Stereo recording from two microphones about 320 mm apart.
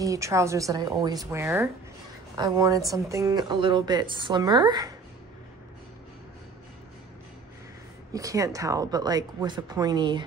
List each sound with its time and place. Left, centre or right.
0.0 s a woman's voice: centre
8.1 s a woman's voice: centre